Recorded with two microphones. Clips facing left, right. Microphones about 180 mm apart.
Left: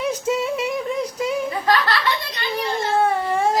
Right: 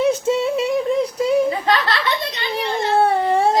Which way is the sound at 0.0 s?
30° right (ahead or behind).